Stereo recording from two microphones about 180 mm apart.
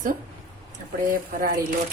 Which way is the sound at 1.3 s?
50° right (ahead or behind).